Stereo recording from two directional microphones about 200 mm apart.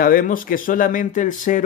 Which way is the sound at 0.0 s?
45° left (ahead or behind).